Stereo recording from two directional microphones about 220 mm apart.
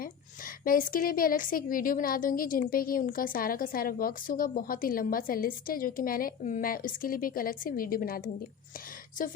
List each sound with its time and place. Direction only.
0.0 s a woman's voice: 40° left (ahead or behind)